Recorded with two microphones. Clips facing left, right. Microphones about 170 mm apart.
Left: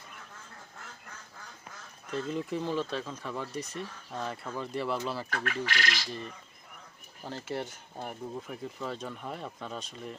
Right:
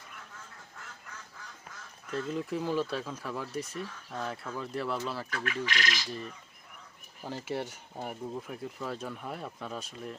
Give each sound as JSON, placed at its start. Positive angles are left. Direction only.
{"t": 2.0, "sound": "speech", "side_deg": 0}
{"t": 5.3, "sound": "speech", "side_deg": 45}
{"t": 7.3, "sound": "speech", "side_deg": -10}